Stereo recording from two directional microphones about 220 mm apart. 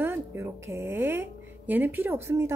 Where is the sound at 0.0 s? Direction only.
10° right (ahead or behind).